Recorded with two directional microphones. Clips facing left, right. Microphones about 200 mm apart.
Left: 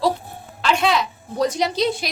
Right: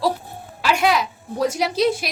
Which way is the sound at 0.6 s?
10° right (ahead or behind).